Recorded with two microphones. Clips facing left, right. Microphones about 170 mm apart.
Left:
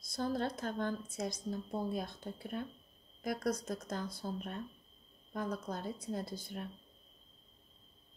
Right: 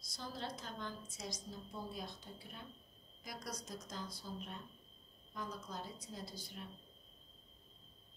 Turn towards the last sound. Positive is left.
turn(degrees=55)  # may be behind; listen again after turning